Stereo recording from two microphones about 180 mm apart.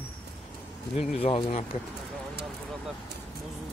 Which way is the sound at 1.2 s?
30° left (ahead or behind).